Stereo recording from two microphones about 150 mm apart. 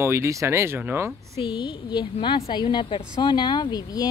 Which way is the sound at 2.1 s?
40° left (ahead or behind).